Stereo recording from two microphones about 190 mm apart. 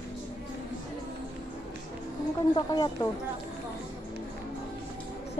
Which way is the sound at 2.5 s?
20° left (ahead or behind).